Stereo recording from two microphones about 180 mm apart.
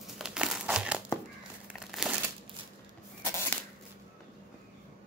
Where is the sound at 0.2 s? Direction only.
5° right (ahead or behind).